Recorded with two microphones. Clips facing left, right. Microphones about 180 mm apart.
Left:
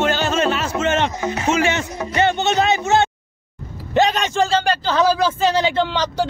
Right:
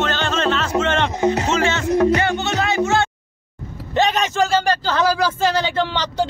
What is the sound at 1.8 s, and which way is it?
Music, 65° right (ahead or behind).